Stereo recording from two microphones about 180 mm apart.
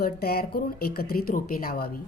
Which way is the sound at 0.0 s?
60° left (ahead or behind).